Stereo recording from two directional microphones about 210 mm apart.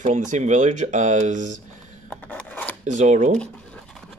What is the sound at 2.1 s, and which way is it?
Scissors, 5° left (ahead or behind).